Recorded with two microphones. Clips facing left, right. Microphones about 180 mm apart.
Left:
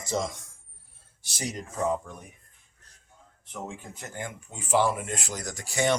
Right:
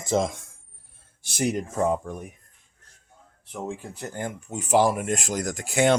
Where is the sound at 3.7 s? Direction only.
35° right (ahead or behind).